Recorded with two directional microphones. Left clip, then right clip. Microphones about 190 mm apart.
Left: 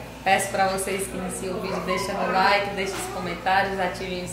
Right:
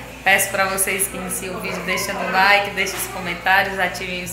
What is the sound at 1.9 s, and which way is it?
A woman's voice, 10° right (ahead or behind).